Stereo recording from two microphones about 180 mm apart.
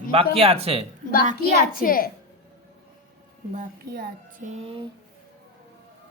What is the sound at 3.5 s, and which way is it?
Speech, 45° right (ahead or behind).